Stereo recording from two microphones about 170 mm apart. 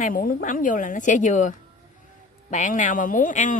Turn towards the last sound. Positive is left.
turn(degrees=50)  # may be behind; listen again after turning